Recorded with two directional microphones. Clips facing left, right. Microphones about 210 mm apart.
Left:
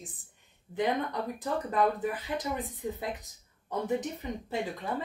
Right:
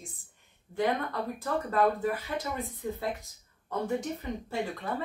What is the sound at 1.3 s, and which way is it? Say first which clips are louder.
Speech: right 1 dB; 20° left (ahead or behind).